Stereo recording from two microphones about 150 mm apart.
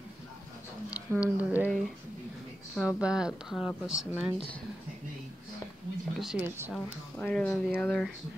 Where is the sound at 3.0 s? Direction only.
5° right (ahead or behind).